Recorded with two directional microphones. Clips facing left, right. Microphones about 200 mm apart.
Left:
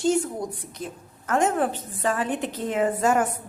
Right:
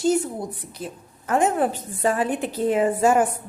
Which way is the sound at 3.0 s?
30° right (ahead or behind).